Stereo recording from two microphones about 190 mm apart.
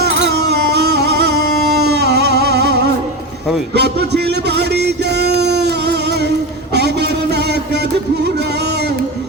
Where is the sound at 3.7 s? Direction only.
60° right (ahead or behind).